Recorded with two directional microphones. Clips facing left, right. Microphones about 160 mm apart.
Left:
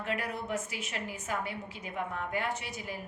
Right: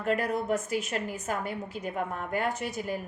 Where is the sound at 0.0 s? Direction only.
45° right (ahead or behind).